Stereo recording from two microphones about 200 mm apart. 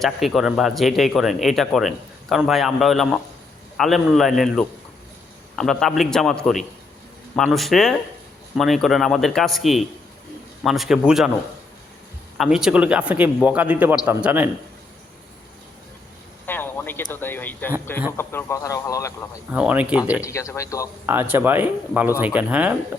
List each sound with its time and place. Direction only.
0.0 s speech: centre (ahead or behind)
12.4 s a man's voice: 5° right (ahead or behind)
16.5 s speech: 10° left (ahead or behind)
19.5 s a man's voice: 5° right (ahead or behind)
20.2 s speech: 15° left (ahead or behind)
21.1 s a man's voice: 10° right (ahead or behind)